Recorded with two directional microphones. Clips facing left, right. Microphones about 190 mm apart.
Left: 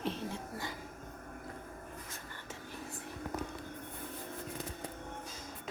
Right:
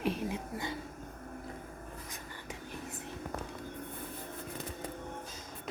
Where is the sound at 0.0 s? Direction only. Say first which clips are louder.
Right 4 dB; 10° right (ahead or behind).